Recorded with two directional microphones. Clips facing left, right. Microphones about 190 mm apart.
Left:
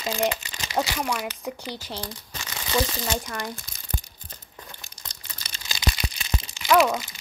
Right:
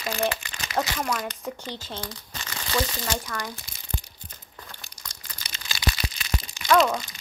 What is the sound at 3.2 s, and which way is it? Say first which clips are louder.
Speech: left 1 dB; 25° left (ahead or behind).